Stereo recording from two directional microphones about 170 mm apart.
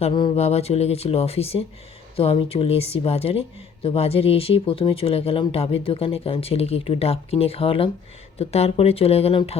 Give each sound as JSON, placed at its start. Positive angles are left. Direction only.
{"t": 0.0, "sound": "speech", "side_deg": 30}